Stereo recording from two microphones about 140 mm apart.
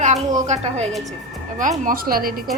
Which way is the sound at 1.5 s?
70° right (ahead or behind).